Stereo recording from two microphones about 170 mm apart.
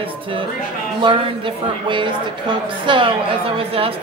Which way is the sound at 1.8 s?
30° right (ahead or behind).